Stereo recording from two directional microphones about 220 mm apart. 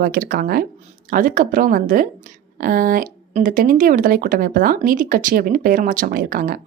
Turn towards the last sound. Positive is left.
turn(degrees=-40)  # may be behind; listen again after turning